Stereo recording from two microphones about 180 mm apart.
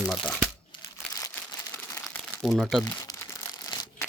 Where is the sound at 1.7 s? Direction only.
15° left (ahead or behind).